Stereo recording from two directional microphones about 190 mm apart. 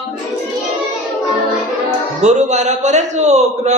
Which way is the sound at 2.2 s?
40° right (ahead or behind).